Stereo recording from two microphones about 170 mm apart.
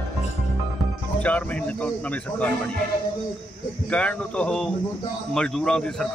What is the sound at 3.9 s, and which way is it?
A man's voice, 5° left (ahead or behind).